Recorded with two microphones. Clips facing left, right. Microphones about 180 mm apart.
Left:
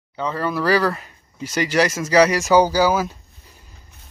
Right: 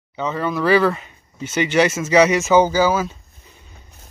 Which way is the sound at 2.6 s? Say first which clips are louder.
Right 1 dB; 10° left (ahead or behind).